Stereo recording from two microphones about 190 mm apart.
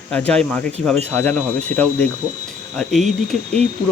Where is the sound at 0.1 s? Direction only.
5° left (ahead or behind).